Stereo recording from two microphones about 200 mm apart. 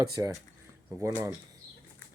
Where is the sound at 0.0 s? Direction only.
20° right (ahead or behind).